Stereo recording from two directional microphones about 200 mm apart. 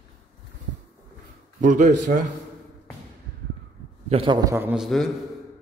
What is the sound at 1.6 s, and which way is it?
Speech, 40° right (ahead or behind).